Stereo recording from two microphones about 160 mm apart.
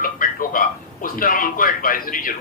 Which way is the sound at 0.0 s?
60° left (ahead or behind).